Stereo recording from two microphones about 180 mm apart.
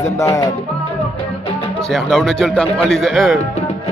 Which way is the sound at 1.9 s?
Centre (ahead or behind).